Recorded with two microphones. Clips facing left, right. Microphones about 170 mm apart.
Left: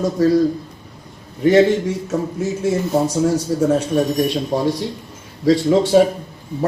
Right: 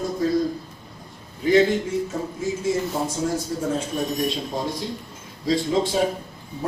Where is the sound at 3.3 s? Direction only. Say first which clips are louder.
Left 8 dB; 75° left (ahead or behind).